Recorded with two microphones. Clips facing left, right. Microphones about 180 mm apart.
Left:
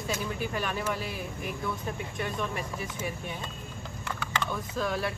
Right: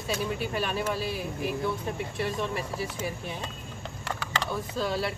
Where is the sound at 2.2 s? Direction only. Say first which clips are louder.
Right 2 dB; 30° right (ahead or behind).